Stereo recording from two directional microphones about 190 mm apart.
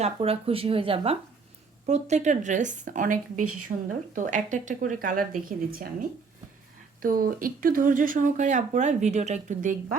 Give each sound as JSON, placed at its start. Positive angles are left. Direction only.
{"t": 0.0, "sound": "speech", "side_deg": -30}
{"t": 7.0, "sound": "speech", "side_deg": -50}